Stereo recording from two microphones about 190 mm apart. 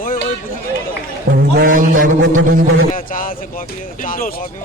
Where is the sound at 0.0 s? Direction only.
45° left (ahead or behind).